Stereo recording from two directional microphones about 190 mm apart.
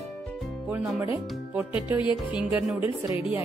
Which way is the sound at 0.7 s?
Centre (ahead or behind).